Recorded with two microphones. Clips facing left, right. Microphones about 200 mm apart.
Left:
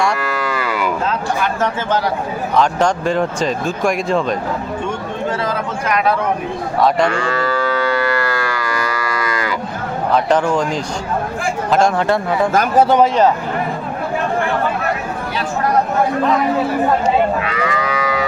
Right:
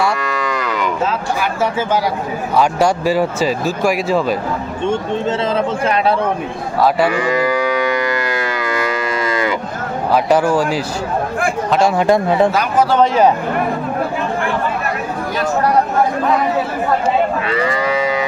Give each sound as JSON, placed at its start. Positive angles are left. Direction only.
{"t": 0.0, "sound": "cattle", "side_deg": 5}
{"t": 1.4, "sound": "speech", "side_deg": -10}
{"t": 4.9, "sound": "speech", "side_deg": -25}
{"t": 6.8, "sound": "speech", "side_deg": -5}
{"t": 7.2, "sound": "livestock", "side_deg": -15}
{"t": 10.2, "sound": "speech", "side_deg": -10}
{"t": 11.9, "sound": "speech", "side_deg": -15}
{"t": 17.5, "sound": "moo", "side_deg": -30}